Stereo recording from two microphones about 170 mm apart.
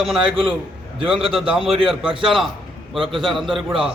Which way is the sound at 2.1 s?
30° right (ahead or behind).